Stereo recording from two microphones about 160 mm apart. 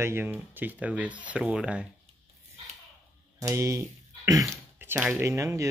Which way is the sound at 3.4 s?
20° right (ahead or behind).